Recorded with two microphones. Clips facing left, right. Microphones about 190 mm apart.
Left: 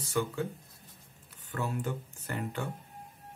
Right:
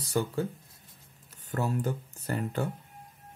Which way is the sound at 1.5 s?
40° right (ahead or behind).